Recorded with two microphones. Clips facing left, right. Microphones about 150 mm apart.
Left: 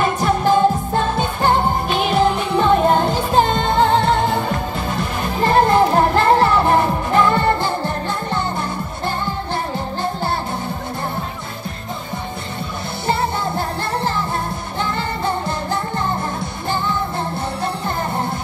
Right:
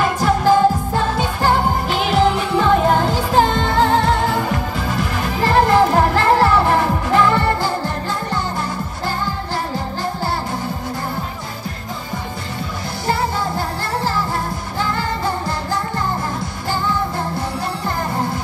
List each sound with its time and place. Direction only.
0.0 s music: 20° left (ahead or behind)
13.0 s music: 25° left (ahead or behind)